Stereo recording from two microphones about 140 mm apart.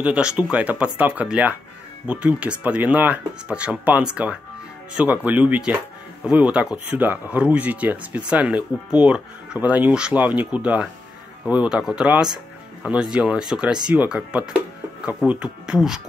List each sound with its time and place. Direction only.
0.0 s speech: 10° right (ahead or behind)